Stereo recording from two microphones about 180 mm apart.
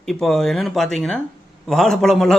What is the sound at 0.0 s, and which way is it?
A man's voice, centre (ahead or behind).